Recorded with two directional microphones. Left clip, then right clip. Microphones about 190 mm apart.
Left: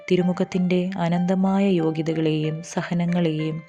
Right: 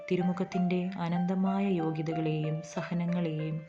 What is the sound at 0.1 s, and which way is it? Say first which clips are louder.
Speech: left 10 dB; 40° left (ahead or behind).